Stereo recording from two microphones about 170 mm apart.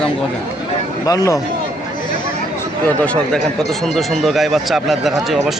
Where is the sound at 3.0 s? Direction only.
5° left (ahead or behind).